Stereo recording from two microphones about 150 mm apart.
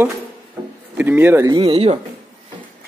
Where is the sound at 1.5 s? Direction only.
40° right (ahead or behind).